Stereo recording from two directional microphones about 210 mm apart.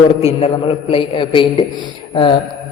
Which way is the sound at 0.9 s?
25° left (ahead or behind).